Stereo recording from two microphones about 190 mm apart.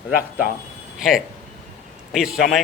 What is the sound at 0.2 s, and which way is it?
Speech, 50° left (ahead or behind).